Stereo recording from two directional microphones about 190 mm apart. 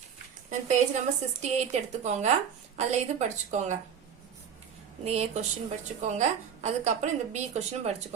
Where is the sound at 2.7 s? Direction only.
35° right (ahead or behind).